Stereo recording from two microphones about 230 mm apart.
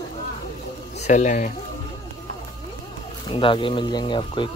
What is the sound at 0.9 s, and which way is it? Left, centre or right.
Speech, left.